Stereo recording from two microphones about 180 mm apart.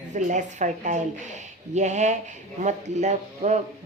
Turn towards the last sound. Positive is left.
turn(degrees=-40)  # may be behind; listen again after turning